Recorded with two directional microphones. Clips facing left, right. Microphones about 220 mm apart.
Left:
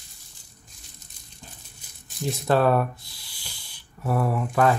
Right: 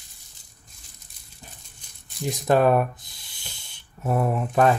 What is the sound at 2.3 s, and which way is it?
Speech, 15° right (ahead or behind).